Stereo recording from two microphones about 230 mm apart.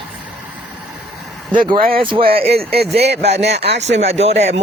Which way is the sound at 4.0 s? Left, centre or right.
Right.